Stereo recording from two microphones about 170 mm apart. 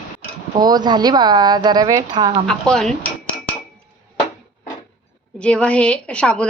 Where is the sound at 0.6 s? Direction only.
25° right (ahead or behind).